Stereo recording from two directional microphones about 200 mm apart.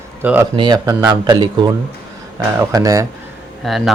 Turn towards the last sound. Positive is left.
turn(degrees=0)  # may be behind; listen again after turning